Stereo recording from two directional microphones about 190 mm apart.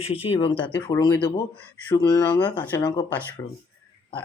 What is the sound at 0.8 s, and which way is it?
Speech, 15° left (ahead or behind).